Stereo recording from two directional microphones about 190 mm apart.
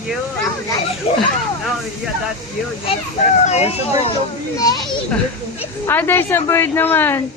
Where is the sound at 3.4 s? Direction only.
35° left (ahead or behind).